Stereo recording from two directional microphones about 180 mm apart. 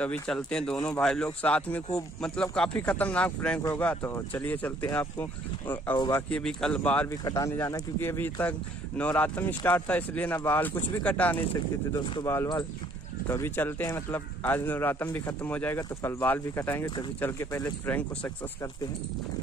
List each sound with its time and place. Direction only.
0.0 s a man's voice: 5° left (ahead or behind)
5.9 s speech: 20° left (ahead or behind)
6.3 s a man's voice: 5° left (ahead or behind)
12.0 s a man's voice: 25° left (ahead or behind); by 18.7 s 10° left (ahead or behind)